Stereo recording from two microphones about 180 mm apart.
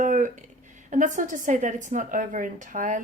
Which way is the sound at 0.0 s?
45° right (ahead or behind).